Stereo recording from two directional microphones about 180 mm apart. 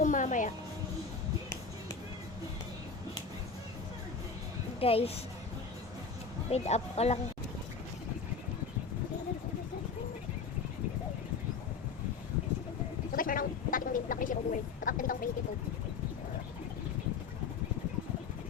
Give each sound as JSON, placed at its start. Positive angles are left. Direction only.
{"t": 0.0, "sound": "music", "side_deg": 45}
{"t": 4.8, "sound": "speech", "side_deg": 35}
{"t": 6.5, "sound": "speech", "side_deg": 35}
{"t": 13.1, "sound": "a sound", "side_deg": 50}